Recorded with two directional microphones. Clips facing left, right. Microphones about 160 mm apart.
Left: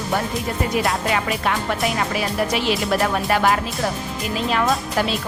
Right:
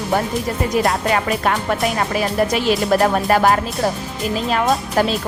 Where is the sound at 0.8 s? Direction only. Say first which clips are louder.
Right 3 dB; 45° right (ahead or behind).